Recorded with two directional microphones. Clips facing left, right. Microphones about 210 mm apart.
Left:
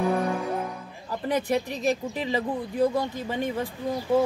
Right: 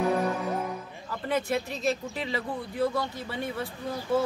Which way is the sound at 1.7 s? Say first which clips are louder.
Left 3 dB; 15° left (ahead or behind).